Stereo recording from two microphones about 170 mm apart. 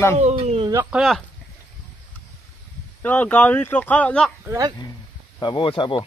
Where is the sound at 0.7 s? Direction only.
15° right (ahead or behind).